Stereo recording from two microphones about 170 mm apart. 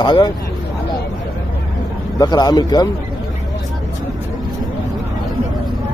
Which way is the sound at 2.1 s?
25° left (ahead or behind).